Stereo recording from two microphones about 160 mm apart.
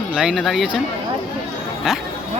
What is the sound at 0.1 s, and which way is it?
Speech, 5° right (ahead or behind).